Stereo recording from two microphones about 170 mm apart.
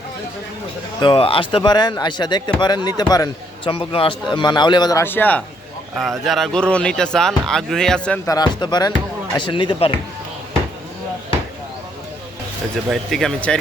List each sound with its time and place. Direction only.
1.0 s speech: 30° left (ahead or behind); by 8.2 s 5° left (ahead or behind)
8.3 s speech: 25° left (ahead or behind)
12.7 s speech: centre (ahead or behind)